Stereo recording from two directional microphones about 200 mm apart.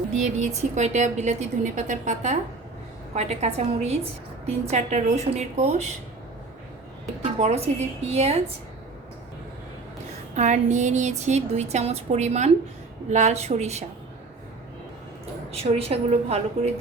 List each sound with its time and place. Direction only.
0.2 s a woman's voice: 35° right (ahead or behind)
7.3 s a woman's voice: 30° right (ahead or behind)
10.3 s a woman's voice: 35° right (ahead or behind)
15.5 s a woman's voice: 30° right (ahead or behind)